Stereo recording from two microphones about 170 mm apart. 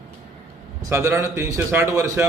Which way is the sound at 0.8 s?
15° right (ahead or behind).